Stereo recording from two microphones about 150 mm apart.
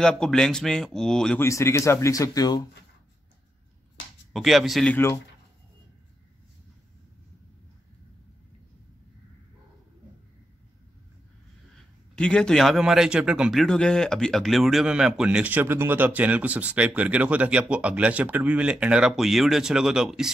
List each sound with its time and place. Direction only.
0.0 s a man's voice: 5° left (ahead or behind)
1.4 s speech: 20° left (ahead or behind)
4.3 s a man's voice: centre (ahead or behind)
4.9 s speech: 15° left (ahead or behind)
11.7 s a man's voice: 5° left (ahead or behind)